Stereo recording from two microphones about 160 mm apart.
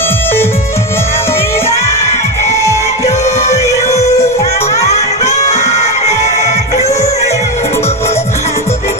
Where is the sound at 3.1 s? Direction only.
45° left (ahead or behind).